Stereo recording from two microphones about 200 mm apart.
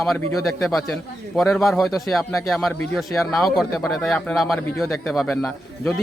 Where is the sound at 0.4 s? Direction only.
Centre (ahead or behind).